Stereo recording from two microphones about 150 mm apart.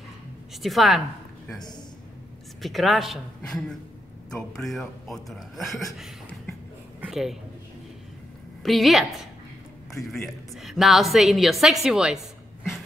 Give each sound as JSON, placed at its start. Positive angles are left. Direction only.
{"t": 0.6, "sound": "a woman's voice", "side_deg": 0}
{"t": 2.6, "sound": "a woman's voice", "side_deg": 0}
{"t": 7.0, "sound": "a sound", "side_deg": -5}
{"t": 8.6, "sound": "a woman's voice", "side_deg": 0}
{"t": 10.0, "sound": "a woman's voice", "side_deg": 0}